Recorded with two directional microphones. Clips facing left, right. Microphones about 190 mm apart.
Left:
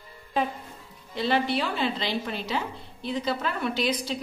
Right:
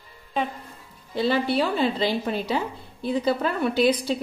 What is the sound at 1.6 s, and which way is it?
Speech, 35° right (ahead or behind).